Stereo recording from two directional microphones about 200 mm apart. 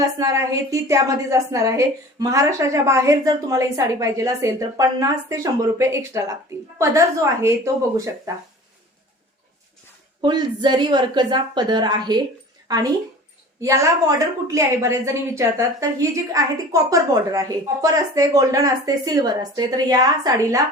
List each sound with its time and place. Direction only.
0.2 s a woman's voice: 15° right (ahead or behind)
10.2 s a woman's voice: 20° right (ahead or behind)